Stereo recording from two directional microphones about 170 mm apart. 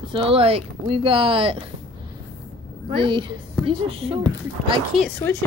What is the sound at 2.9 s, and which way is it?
A woman's voice, 30° right (ahead or behind).